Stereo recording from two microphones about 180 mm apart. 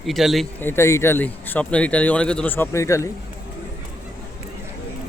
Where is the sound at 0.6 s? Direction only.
15° left (ahead or behind).